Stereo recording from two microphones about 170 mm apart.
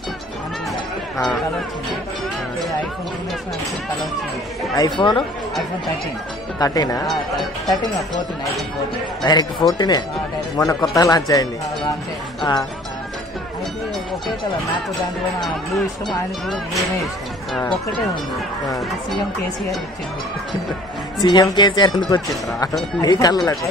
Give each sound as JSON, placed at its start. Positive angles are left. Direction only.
{"t": 4.7, "sound": "speech", "side_deg": 25}
{"t": 6.6, "sound": "speech", "side_deg": 20}
{"t": 7.1, "sound": "speech", "side_deg": 0}
{"t": 9.2, "sound": "speech", "side_deg": 25}
{"t": 16.4, "sound": "speech", "side_deg": 0}
{"t": 21.2, "sound": "speech", "side_deg": 25}